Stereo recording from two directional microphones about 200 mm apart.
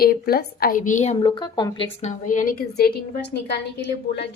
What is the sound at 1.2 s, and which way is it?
A woman's voice, 25° left (ahead or behind).